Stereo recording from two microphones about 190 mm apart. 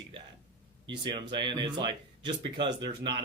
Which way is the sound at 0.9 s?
25° right (ahead or behind).